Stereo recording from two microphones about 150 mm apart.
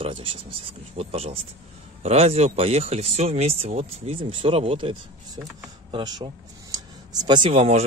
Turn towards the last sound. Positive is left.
turn(degrees=-45)  # may be behind; listen again after turning